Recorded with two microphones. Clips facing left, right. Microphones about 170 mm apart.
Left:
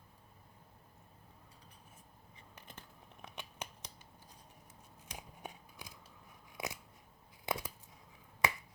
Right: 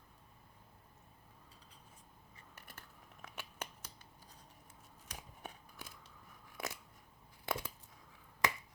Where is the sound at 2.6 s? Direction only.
20° left (ahead or behind).